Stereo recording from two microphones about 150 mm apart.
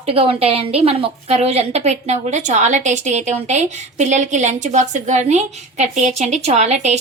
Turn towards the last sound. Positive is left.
turn(degrees=-50)  # may be behind; listen again after turning